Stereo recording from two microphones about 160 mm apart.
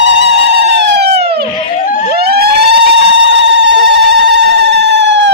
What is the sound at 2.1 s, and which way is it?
Police car, 80° right.